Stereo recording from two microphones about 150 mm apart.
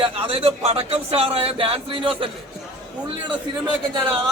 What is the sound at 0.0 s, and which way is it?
Speech, 40° right (ahead or behind).